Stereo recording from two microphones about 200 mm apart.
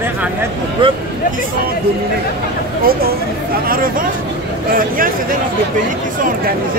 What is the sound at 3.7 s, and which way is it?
Speech, 45° right (ahead or behind).